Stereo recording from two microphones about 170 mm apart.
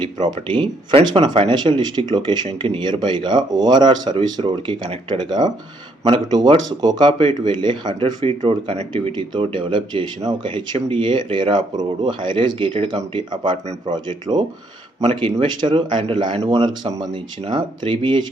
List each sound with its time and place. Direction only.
0.0 s speech: 25° right (ahead or behind)